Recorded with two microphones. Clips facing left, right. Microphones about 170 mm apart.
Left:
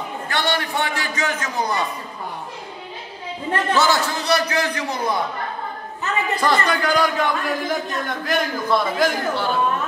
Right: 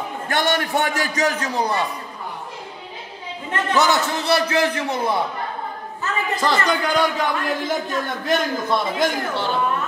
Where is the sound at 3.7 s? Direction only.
20° right (ahead or behind).